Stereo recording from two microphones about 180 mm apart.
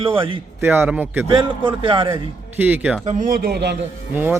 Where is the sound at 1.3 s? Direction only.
25° right (ahead or behind).